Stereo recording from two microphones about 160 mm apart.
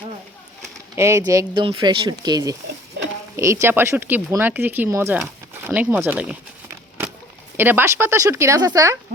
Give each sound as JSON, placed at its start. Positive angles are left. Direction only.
{"t": 0.9, "sound": "speech", "side_deg": -15}
{"t": 7.5, "sound": "speech", "side_deg": -15}